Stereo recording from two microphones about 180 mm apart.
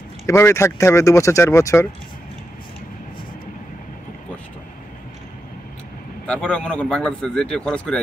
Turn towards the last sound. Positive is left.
turn(degrees=5)  # may be behind; listen again after turning